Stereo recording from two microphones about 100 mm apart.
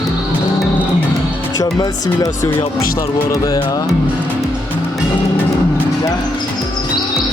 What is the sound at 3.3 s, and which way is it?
Music, 35° left (ahead or behind).